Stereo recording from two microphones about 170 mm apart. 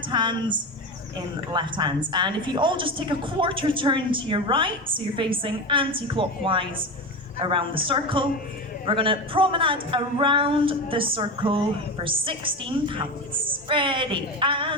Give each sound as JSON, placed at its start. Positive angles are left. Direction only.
{"t": 0.1, "sound": "a woman's voice", "side_deg": -25}
{"t": 1.5, "sound": "a woman's voice", "side_deg": -25}